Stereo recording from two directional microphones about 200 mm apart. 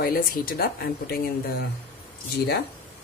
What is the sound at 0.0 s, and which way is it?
Speech, 45° left (ahead or behind).